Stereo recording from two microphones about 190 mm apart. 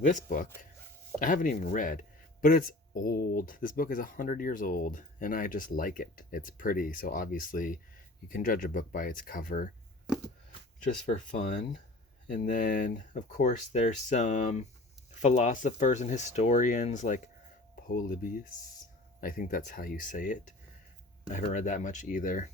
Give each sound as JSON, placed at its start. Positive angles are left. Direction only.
{"t": 0.0, "sound": "speech", "side_deg": 40}
{"t": 11.1, "sound": "speech", "side_deg": 40}